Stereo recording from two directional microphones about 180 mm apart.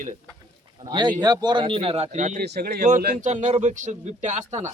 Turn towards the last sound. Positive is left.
turn(degrees=-40)  # may be behind; listen again after turning